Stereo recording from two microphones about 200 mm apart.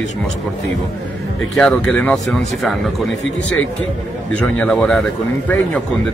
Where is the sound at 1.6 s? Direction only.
5° left (ahead or behind).